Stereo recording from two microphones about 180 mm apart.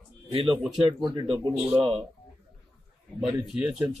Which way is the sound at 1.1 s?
25° right (ahead or behind).